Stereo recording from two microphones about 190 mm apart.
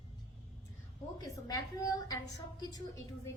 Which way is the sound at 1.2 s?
20° left (ahead or behind).